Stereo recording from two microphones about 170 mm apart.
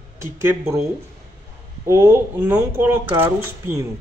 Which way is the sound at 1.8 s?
15° right (ahead or behind).